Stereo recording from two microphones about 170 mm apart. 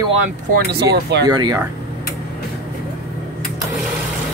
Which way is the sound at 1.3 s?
20° right (ahead or behind).